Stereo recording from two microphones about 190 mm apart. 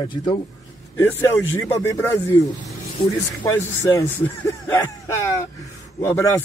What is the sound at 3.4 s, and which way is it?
Speech, 15° left (ahead or behind).